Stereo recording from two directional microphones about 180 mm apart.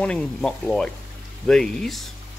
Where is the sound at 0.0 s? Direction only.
5° left (ahead or behind).